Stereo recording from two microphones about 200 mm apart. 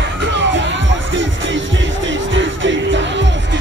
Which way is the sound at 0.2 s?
65° right (ahead or behind).